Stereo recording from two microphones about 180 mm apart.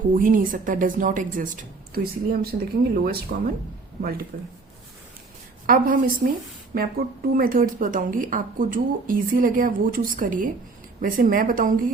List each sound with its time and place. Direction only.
0.1 s speech: 50° right (ahead or behind)
5.6 s speech: 50° right (ahead or behind)